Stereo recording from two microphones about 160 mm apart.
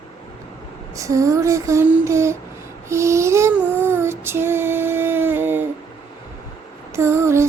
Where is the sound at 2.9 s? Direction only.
15° right (ahead or behind).